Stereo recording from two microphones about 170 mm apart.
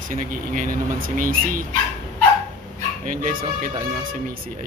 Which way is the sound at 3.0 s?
55° right (ahead or behind).